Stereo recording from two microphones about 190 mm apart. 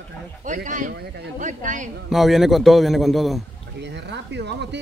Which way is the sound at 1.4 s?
40° right (ahead or behind).